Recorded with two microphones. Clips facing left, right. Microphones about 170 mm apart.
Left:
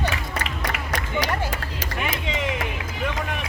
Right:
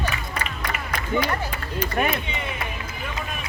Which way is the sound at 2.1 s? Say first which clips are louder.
Left 2 dB; 90° left.